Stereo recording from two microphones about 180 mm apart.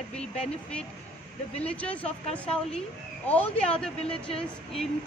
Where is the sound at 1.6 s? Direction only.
5° left (ahead or behind).